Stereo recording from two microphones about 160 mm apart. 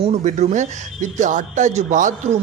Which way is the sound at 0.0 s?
45° right (ahead or behind).